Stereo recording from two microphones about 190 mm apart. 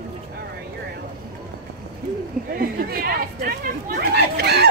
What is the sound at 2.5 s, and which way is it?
Chatter, 50° right (ahead or behind).